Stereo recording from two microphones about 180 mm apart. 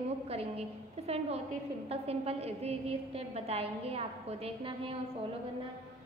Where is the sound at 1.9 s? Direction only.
35° right (ahead or behind).